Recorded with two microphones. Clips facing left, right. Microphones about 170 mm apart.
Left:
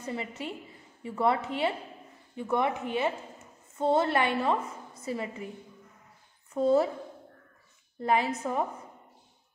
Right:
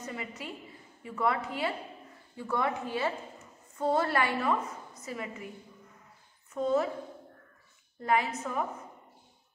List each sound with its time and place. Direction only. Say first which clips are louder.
0.0 s a woman's voice: left 4 dB; 30° left (ahead or behind)
6.5 s a woman's voice: left 4 dB; 30° left (ahead or behind)
8.0 s a woman's voice: left 2 dB; 30° left (ahead or behind)